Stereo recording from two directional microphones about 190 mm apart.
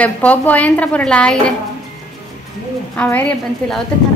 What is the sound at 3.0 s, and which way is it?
Speech, 5° left (ahead or behind).